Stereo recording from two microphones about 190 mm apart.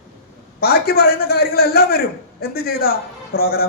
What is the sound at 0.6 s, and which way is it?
A man's voice, 55° left (ahead or behind).